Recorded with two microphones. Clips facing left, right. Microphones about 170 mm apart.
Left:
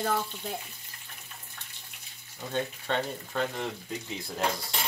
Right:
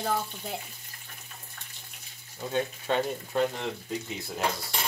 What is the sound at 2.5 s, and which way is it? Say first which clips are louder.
Speech: right 2 dB; 10° right (ahead or behind).